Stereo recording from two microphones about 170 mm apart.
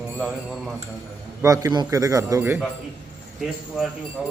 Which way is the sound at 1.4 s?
20° right (ahead or behind).